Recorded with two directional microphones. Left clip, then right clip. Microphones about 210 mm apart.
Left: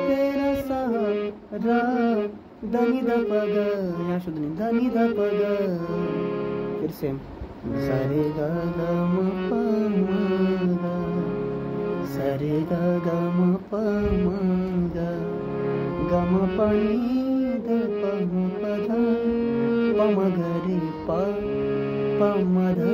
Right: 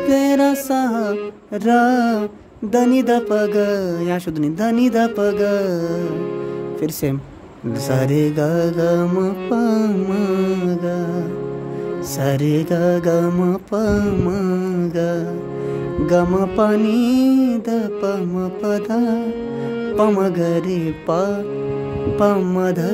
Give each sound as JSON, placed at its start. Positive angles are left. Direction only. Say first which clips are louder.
{"t": 0.1, "sound": "speech", "louder": "right 11 dB", "side_deg": -55}
{"t": 1.6, "sound": "a sound", "louder": "right 8 dB", "side_deg": -55}
{"t": 2.7, "sound": "speech", "louder": "right 7 dB", "side_deg": -50}
{"t": 8.1, "sound": "speech", "louder": "right 7 dB", "side_deg": -55}
{"t": 12.3, "sound": "speech", "louder": "right 7 dB", "side_deg": -50}
{"t": 16.1, "sound": "speech", "louder": "right 8 dB", "side_deg": -55}
{"t": 20.0, "sound": "speech", "louder": "right 6 dB", "side_deg": -45}